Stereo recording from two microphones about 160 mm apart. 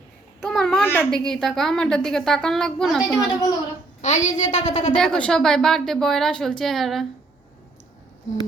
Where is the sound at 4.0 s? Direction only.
45° left (ahead or behind).